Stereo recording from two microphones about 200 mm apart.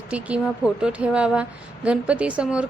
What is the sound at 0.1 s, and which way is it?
A woman's voice, 5° right (ahead or behind).